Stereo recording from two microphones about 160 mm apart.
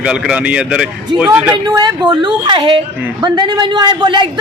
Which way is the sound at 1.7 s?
25° right (ahead or behind).